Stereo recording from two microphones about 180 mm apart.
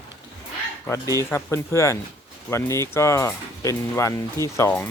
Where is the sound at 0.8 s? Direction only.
15° left (ahead or behind).